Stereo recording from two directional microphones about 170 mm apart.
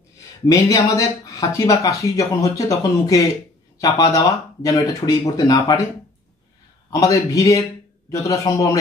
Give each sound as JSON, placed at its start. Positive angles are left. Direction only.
{"t": 0.5, "sound": "speech", "side_deg": 20}
{"t": 6.9, "sound": "speech", "side_deg": 20}